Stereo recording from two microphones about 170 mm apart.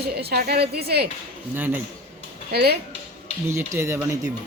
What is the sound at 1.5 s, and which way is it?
Speech, 10° right (ahead or behind).